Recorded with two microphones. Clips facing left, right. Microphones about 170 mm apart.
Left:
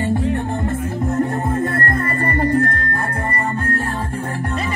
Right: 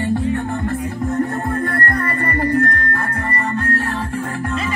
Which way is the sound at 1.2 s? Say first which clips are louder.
Left 2 dB; 25° left (ahead or behind).